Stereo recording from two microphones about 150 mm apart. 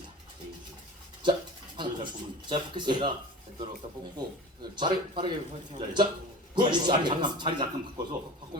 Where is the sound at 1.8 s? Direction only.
30° right (ahead or behind).